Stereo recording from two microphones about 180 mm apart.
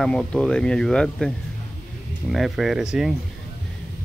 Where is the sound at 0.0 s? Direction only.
5° left (ahead or behind).